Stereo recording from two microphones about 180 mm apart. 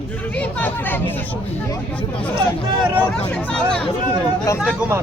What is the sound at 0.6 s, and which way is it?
Speech, 10° left (ahead or behind).